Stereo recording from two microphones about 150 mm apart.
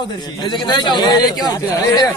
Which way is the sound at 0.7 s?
30° left (ahead or behind).